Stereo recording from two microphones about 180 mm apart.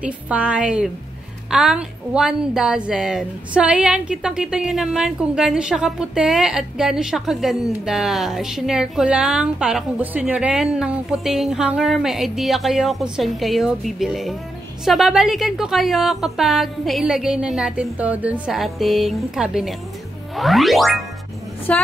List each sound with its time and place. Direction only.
0.0 s a woman's voice: 5° right (ahead or behind)